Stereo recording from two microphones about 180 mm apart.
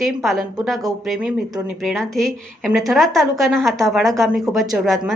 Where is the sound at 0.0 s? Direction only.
Centre (ahead or behind).